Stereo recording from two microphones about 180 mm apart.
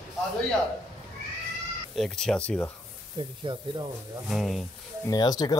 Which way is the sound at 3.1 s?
25° right (ahead or behind).